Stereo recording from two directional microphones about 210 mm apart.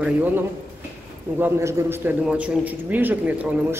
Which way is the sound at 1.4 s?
10° right (ahead or behind).